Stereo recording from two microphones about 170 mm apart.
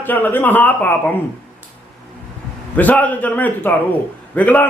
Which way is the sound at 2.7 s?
10° left (ahead or behind).